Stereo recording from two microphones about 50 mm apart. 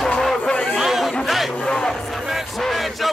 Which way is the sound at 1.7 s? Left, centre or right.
Centre.